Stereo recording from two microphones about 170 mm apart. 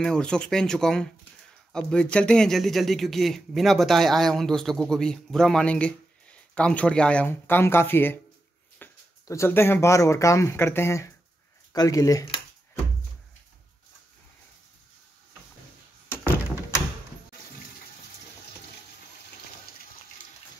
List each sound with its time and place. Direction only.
0.0 s speech: 5° left (ahead or behind); by 12.3 s 20° left (ahead or behind)